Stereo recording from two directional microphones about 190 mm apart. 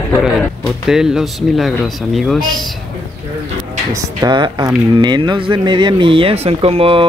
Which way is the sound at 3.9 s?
20° right (ahead or behind).